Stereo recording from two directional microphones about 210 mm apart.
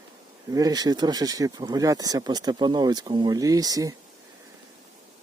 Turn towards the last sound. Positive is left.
turn(degrees=-15)  # may be behind; listen again after turning